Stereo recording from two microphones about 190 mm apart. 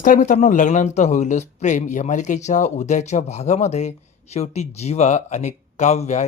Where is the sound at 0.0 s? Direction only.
40° left (ahead or behind).